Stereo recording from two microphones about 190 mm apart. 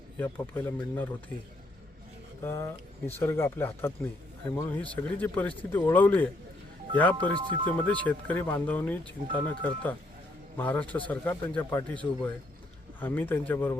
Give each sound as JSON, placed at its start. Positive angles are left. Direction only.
{"t": 0.2, "sound": "speech", "side_deg": 10}
{"t": 2.4, "sound": "speech", "side_deg": 15}
{"t": 7.3, "sound": "speech", "side_deg": -25}
{"t": 7.9, "sound": "speech", "side_deg": 10}
{"t": 10.6, "sound": "speech", "side_deg": 10}